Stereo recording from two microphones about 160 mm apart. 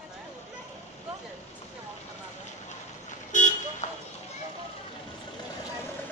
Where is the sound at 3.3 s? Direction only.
50° left (ahead or behind).